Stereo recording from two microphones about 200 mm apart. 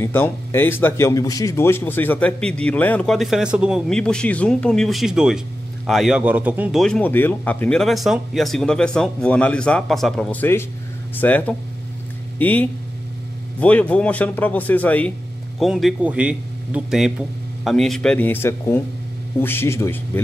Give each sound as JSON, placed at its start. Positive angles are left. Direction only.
{"t": 0.0, "sound": "speech", "side_deg": 10}